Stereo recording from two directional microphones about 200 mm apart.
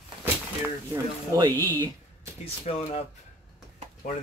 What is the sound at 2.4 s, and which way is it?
Speech, 30° left (ahead or behind).